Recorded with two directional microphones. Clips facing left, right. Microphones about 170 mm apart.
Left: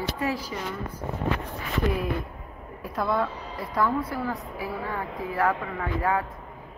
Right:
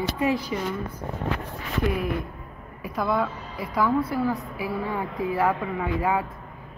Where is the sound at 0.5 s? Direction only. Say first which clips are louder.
Right 5 dB; 15° right (ahead or behind).